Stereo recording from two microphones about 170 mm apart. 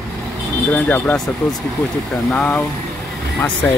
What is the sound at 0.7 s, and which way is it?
Speech, 10° left (ahead or behind).